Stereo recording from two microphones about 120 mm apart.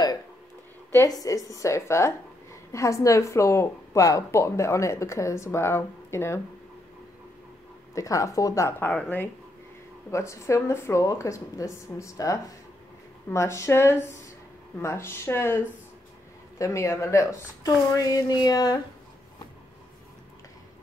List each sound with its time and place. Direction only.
1.2 s a woman's voice: 30° left (ahead or behind)
7.9 s a woman's voice: 25° left (ahead or behind)
10.1 s a woman's voice: 25° left (ahead or behind)